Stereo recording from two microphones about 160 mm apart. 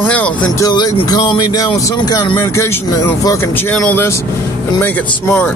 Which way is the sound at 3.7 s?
10° left (ahead or behind).